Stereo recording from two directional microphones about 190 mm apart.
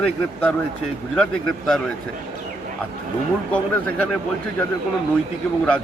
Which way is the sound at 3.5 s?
5° left (ahead or behind).